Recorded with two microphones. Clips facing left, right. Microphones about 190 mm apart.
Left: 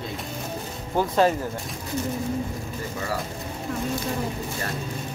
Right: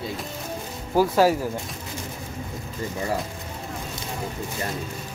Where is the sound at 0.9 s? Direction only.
5° right (ahead or behind).